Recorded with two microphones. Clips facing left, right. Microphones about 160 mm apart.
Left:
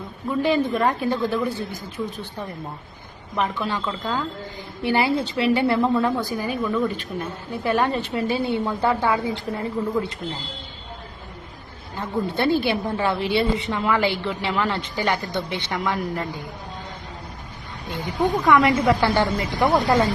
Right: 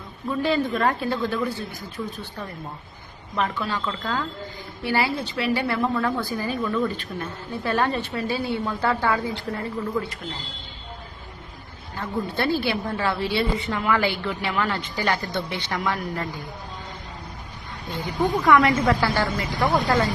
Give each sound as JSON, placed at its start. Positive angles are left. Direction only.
{"t": 0.3, "sound": "a woman's voice", "side_deg": 15}
{"t": 3.3, "sound": "a woman's voice", "side_deg": 20}
{"t": 11.9, "sound": "a woman's voice", "side_deg": 20}
{"t": 17.9, "sound": "a woman's voice", "side_deg": 20}